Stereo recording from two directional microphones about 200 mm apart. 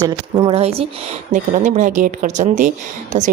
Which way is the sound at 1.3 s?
40° right (ahead or behind).